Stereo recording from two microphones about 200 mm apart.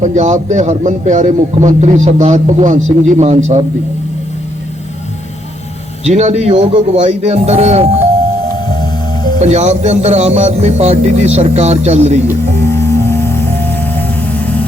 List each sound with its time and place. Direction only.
0.0 s a man's voice: 35° right (ahead or behind)
6.1 s a man's voice: 35° right (ahead or behind)
9.4 s a man's voice: 35° right (ahead or behind)
12.3 s music: 10° left (ahead or behind)